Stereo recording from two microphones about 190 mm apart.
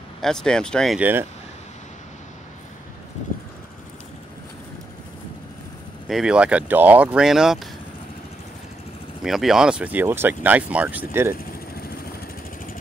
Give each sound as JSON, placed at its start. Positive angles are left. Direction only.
{"t": 0.2, "sound": "speech", "side_deg": 5}
{"t": 6.0, "sound": "speech", "side_deg": 0}
{"t": 9.2, "sound": "speech", "side_deg": 0}
{"t": 11.7, "sound": "vehicle", "side_deg": 55}